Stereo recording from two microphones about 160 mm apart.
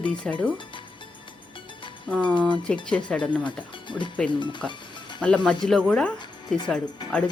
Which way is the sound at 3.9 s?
30° left (ahead or behind).